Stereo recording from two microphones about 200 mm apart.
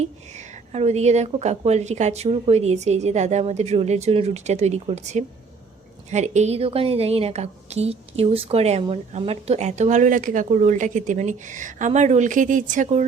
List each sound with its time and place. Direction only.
0.0 s a woman's voice: 35° right (ahead or behind)